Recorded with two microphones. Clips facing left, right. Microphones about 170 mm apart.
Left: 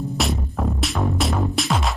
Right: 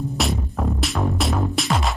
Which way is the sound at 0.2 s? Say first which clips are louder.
Even; centre (ahead or behind).